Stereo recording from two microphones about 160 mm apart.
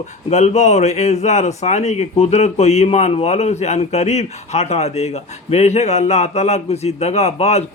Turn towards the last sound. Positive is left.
turn(degrees=40)  # may be behind; listen again after turning